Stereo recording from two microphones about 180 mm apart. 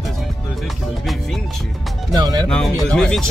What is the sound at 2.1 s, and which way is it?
Speech, 20° right (ahead or behind).